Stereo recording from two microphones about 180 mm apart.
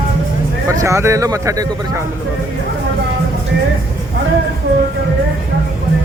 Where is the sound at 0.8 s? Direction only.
15° right (ahead or behind).